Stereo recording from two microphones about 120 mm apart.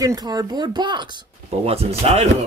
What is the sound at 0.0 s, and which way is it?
Speech, 30° right (ahead or behind).